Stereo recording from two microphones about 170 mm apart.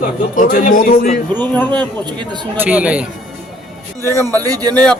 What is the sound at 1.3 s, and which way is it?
Speech, 10° left (ahead or behind).